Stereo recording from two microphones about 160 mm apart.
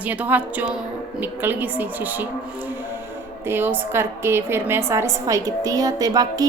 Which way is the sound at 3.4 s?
15° right (ahead or behind).